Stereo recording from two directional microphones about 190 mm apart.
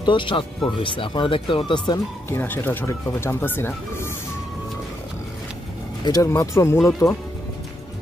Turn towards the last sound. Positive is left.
turn(degrees=15)  # may be behind; listen again after turning